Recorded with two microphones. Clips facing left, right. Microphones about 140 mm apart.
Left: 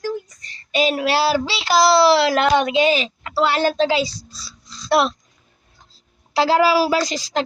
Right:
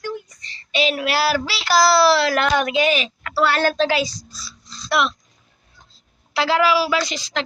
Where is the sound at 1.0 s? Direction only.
30° left (ahead or behind).